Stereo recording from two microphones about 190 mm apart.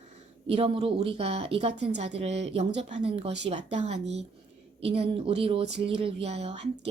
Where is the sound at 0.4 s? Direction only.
30° right (ahead or behind).